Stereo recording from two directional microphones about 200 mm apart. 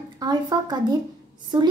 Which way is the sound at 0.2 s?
20° right (ahead or behind).